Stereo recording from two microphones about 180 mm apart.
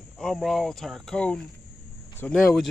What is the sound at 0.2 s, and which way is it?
Speech, centre (ahead or behind).